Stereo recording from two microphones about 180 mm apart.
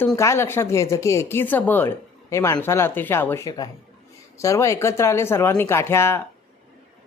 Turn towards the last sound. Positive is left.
turn(degrees=15)  # may be behind; listen again after turning